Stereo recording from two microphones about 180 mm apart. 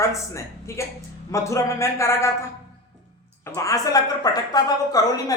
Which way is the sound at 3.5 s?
20° left (ahead or behind).